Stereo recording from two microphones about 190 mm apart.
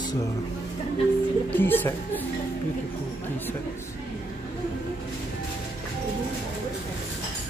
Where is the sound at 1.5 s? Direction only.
10° left (ahead or behind).